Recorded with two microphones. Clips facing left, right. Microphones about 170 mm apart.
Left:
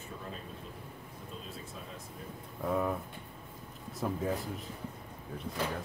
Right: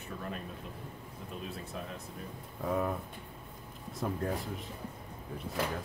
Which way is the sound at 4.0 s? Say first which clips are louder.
Left 1 dB; centre (ahead or behind).